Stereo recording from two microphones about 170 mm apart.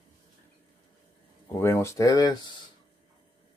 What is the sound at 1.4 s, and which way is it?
Speech, 15° left (ahead or behind).